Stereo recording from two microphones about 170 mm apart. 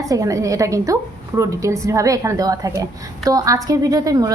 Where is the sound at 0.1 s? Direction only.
20° right (ahead or behind).